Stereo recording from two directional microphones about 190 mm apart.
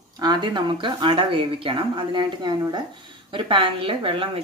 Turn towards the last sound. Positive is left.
turn(degrees=-30)  # may be behind; listen again after turning